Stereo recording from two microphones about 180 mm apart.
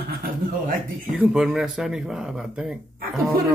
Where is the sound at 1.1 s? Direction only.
5° right (ahead or behind).